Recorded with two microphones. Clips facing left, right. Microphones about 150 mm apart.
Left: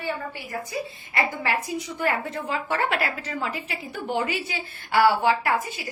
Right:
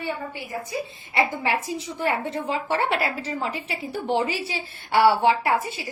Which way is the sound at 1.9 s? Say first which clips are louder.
Right 2 dB; 30° right (ahead or behind).